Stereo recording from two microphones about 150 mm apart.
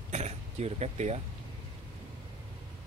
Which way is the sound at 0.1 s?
45° right (ahead or behind).